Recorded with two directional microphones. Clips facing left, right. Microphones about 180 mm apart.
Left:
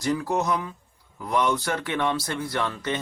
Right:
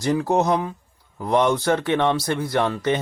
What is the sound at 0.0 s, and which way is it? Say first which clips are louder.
Speech: right 5 dB; 30° right (ahead or behind).